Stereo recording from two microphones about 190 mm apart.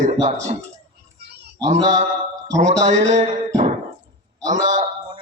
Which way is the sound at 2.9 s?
35° right (ahead or behind).